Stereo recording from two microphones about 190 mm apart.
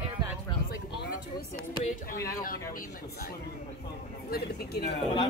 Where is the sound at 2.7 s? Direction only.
50° left (ahead or behind).